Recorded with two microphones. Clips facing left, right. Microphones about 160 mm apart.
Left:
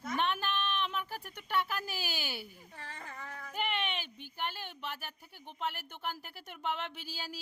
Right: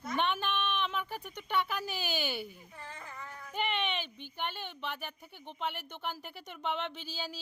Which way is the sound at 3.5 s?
5° left (ahead or behind).